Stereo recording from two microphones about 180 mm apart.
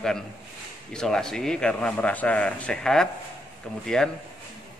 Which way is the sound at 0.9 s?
5° left (ahead or behind).